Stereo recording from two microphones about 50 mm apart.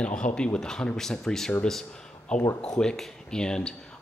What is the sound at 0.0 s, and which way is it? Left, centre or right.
Speech, left.